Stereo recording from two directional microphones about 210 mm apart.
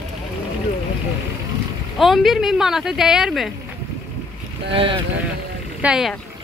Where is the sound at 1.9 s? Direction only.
Centre (ahead or behind).